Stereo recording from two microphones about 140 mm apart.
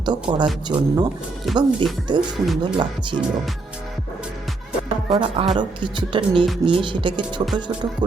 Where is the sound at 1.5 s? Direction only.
Centre (ahead or behind).